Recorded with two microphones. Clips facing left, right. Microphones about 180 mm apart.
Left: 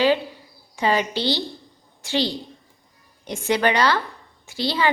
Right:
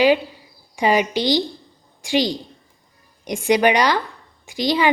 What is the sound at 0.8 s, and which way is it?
A woman's voice, 15° right (ahead or behind).